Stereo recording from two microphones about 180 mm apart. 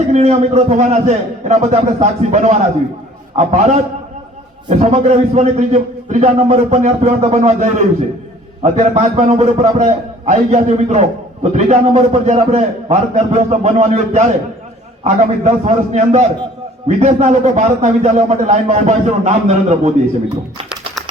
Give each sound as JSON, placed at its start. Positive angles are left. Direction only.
{"t": 0.1, "sound": "a man's voice", "side_deg": -35}